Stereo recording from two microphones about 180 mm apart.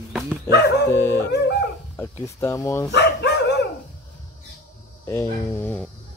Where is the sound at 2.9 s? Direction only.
70° left (ahead or behind).